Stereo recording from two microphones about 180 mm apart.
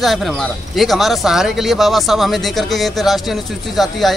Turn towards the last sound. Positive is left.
turn(degrees=0)  # may be behind; listen again after turning